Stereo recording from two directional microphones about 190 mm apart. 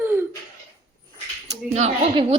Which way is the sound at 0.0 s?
10° right (ahead or behind).